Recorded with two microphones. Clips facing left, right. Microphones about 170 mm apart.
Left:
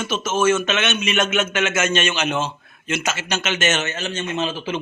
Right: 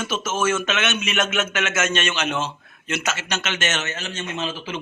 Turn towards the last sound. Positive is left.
turn(degrees=25)  # may be behind; listen again after turning